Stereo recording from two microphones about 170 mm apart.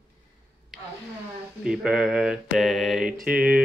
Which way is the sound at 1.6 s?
5° right (ahead or behind).